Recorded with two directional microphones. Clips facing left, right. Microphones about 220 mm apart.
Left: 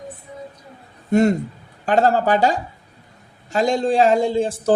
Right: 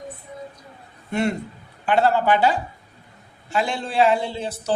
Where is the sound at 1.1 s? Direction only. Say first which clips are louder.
Left 7 dB; 45° left (ahead or behind).